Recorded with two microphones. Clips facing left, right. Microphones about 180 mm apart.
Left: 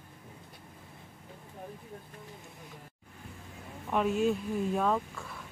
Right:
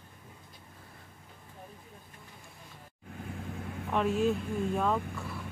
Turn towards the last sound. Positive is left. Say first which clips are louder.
# left 1 dB
turn(degrees=0)  # may be behind; listen again after turning